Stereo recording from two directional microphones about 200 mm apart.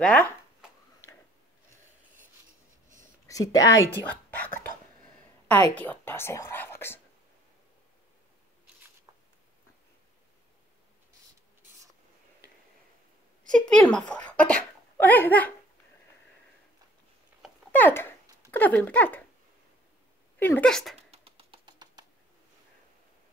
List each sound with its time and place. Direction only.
0.0 s shuffling cards: 5° left (ahead or behind)
3.3 s a woman's voice: 15° left (ahead or behind)
5.5 s a woman's voice: 10° left (ahead or behind)
13.5 s a child's voice: 5° left (ahead or behind)
17.4 s a sound: 10° left (ahead or behind)
18.5 s a woman's voice: 10° left (ahead or behind)
20.3 s a woman's voice: 10° left (ahead or behind)
21.1 s bird: 30° right (ahead or behind)